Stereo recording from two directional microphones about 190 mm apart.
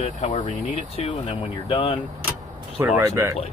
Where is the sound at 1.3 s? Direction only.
25° left (ahead or behind).